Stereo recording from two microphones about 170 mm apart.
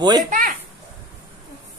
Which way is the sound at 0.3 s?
50° right (ahead or behind).